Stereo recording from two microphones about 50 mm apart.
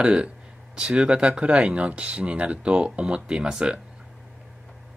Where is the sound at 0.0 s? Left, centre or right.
Centre.